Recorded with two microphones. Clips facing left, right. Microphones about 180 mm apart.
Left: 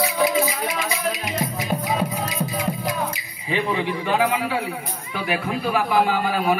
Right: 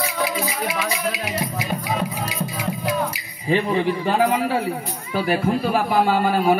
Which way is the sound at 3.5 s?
45° right (ahead or behind).